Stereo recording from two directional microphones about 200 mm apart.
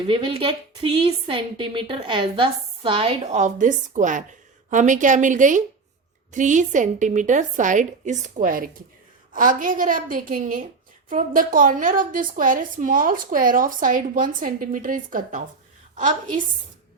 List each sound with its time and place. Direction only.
0.0 s a woman's voice: 25° right (ahead or behind); by 15.4 s 45° right (ahead or behind)